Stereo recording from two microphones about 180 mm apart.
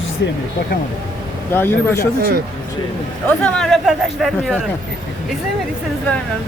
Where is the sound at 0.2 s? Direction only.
75° left (ahead or behind).